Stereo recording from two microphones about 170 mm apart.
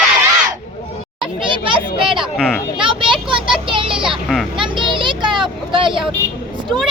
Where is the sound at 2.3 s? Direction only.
5° right (ahead or behind).